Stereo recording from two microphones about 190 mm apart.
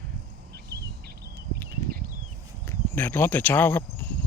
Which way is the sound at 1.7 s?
50° right (ahead or behind).